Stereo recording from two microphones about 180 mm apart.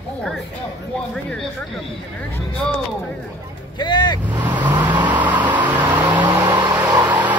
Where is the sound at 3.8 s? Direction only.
25° left (ahead or behind).